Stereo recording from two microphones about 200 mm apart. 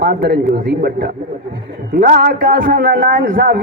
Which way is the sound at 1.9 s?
45° right (ahead or behind).